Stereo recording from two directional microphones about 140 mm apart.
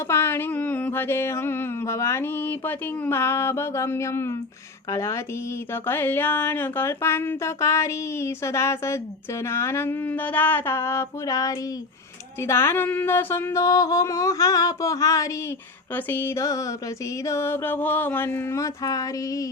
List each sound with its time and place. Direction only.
0.1 s speech: 15° left (ahead or behind)
4.9 s music: 20° left (ahead or behind)
5.7 s speech: 15° left (ahead or behind)
12.4 s music: 20° left (ahead or behind)
17.2 s speech: 20° left (ahead or behind)